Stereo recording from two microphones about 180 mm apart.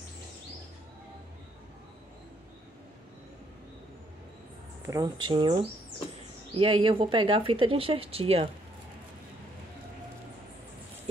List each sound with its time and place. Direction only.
4.8 s speech: 20° right (ahead or behind)